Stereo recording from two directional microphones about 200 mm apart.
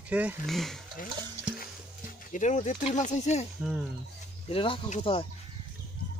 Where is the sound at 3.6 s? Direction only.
5° right (ahead or behind).